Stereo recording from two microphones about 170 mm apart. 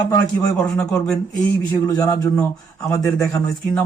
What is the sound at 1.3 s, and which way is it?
A man's voice, 20° left (ahead or behind).